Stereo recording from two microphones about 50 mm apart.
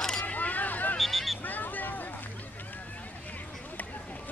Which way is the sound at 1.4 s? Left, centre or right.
Left.